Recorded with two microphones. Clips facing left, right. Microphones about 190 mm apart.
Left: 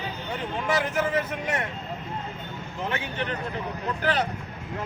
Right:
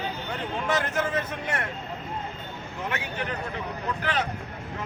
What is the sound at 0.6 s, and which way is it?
Speech, 10° left (ahead or behind).